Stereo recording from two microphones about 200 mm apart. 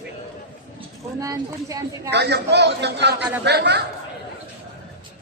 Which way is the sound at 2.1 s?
55° right (ahead or behind).